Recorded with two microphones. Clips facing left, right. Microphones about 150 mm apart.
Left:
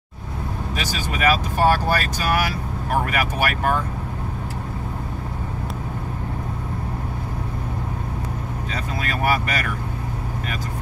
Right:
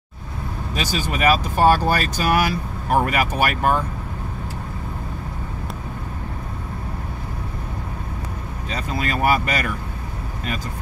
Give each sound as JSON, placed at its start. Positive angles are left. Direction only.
{"t": 0.7, "sound": "speech", "side_deg": -20}
{"t": 8.7, "sound": "speech", "side_deg": -20}